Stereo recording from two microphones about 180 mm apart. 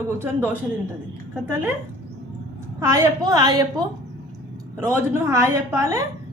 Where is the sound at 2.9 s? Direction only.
20° right (ahead or behind).